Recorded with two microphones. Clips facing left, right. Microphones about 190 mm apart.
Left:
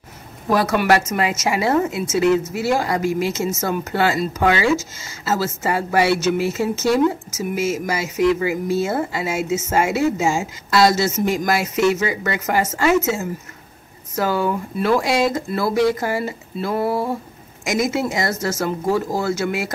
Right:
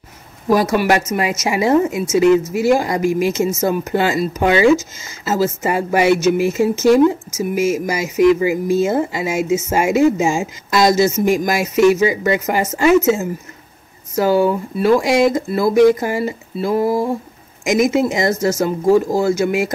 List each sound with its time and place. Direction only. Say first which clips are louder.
0.5 s speech: right 2 dB; 15° right (ahead or behind)